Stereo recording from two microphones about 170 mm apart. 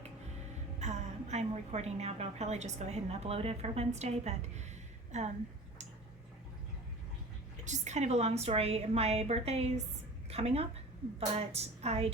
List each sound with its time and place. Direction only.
0.8 s a woman's voice: 40° right (ahead or behind)
7.6 s a woman's voice: 45° right (ahead or behind)